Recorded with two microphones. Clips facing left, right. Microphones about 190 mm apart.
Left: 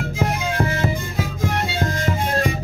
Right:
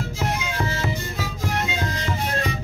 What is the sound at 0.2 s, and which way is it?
Music, 55° left (ahead or behind).